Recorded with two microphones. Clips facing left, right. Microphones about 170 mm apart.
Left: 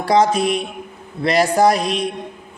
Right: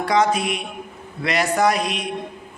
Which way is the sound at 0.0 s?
35° left (ahead or behind).